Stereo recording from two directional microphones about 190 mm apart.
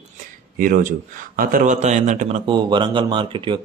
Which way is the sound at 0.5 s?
45° right (ahead or behind).